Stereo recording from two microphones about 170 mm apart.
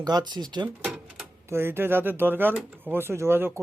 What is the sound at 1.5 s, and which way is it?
Speech, 15° right (ahead or behind).